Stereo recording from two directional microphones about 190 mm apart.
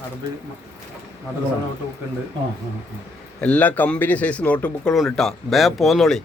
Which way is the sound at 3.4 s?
10° left (ahead or behind).